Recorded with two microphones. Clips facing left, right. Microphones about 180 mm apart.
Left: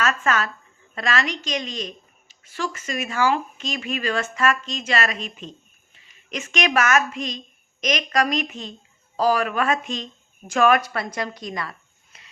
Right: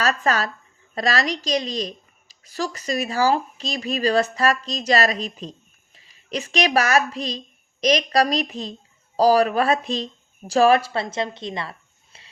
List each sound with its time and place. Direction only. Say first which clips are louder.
0.0 s a woman's voice: right 1 dB; 35° right (ahead or behind)